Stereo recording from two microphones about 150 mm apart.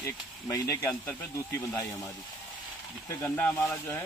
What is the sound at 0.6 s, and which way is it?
Speech, 20° left (ahead or behind).